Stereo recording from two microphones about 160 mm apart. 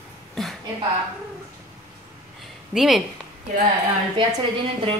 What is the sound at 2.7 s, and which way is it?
Speech, centre (ahead or behind).